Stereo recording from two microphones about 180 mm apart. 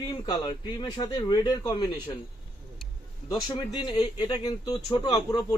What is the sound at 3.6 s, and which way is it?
Speech, 25° left (ahead or behind).